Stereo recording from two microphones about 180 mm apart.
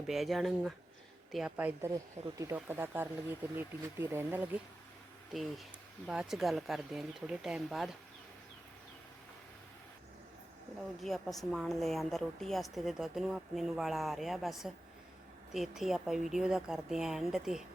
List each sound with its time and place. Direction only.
0.1 s a woman's voice: centre (ahead or behind)
1.9 s speech: 20° right (ahead or behind)
2.6 s speech: 10° right (ahead or behind)
5.3 s a woman's voice: centre (ahead or behind)
11.0 s a woman's voice: centre (ahead or behind)